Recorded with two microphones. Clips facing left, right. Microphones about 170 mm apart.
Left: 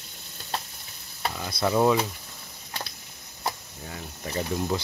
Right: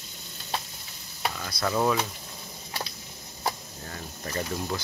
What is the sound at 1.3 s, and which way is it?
Speech, 15° left (ahead or behind).